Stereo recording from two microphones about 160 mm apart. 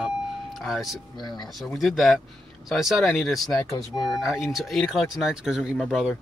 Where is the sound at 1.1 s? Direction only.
25° left (ahead or behind).